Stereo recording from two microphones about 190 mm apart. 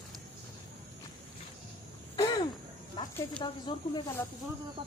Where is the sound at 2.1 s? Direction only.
20° left (ahead or behind).